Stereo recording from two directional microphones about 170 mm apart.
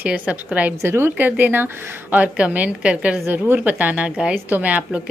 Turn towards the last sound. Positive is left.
turn(degrees=-10)  # may be behind; listen again after turning